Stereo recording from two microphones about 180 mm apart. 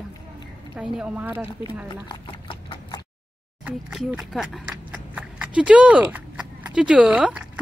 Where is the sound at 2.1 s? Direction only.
25° left (ahead or behind).